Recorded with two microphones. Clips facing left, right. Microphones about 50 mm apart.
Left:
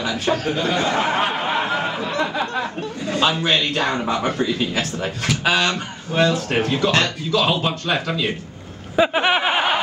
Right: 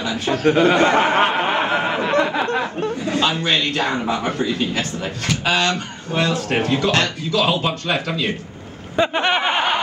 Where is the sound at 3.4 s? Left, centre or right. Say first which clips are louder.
Even; centre.